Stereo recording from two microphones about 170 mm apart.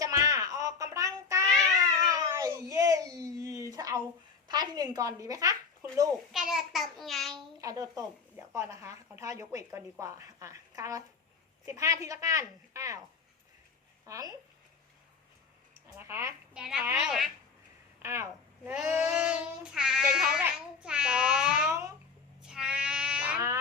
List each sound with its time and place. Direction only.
0.0 s babbling: 20° right (ahead or behind)
4.4 s speech: 25° right (ahead or behind)
5.8 s a sound: 20° right (ahead or behind)
6.3 s child singing: 5° right (ahead or behind)
7.3 s speech: 20° right (ahead or behind)
14.0 s speech: 20° right (ahead or behind)
16.0 s a child's voice: 15° right (ahead or behind)
16.6 s child singing: 5° right (ahead or behind)
18.0 s a child's voice: 15° right (ahead or behind)
20.8 s child singing: 5° right (ahead or behind)
21.7 s speech: 15° right (ahead or behind)
22.4 s a sound: 5° right (ahead or behind)